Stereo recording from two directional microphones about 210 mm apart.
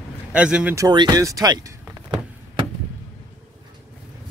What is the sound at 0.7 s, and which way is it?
Speech, 20° right (ahead or behind).